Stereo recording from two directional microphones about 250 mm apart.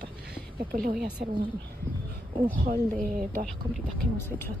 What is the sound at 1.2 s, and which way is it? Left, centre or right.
Speech, right.